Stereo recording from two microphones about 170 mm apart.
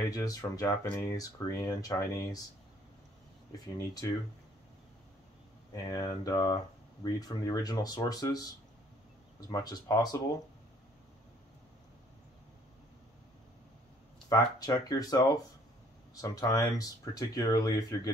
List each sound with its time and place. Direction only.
0.1 s speech: 20° left (ahead or behind)
5.9 s speech: 20° left (ahead or behind)
9.5 s speech: 20° left (ahead or behind)
14.3 s speech: 20° left (ahead or behind)